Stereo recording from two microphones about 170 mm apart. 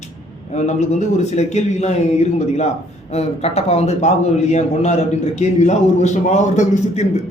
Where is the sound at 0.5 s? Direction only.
40° left (ahead or behind).